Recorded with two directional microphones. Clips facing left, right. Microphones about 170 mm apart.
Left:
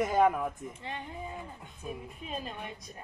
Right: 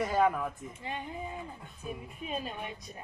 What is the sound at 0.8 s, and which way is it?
Speech, 15° right (ahead or behind).